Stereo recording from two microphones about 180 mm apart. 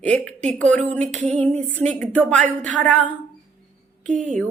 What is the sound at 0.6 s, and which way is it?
Speech, 10° left (ahead or behind).